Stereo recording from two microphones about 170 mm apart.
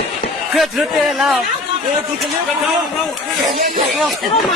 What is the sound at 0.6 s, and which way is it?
Speech, centre (ahead or behind).